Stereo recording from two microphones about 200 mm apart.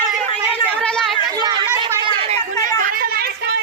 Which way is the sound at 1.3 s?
20° right (ahead or behind).